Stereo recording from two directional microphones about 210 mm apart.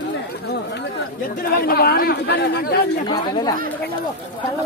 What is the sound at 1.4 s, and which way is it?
Speech, 45° left (ahead or behind).